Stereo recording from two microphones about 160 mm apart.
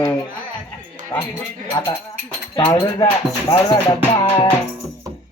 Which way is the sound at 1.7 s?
20° left (ahead or behind).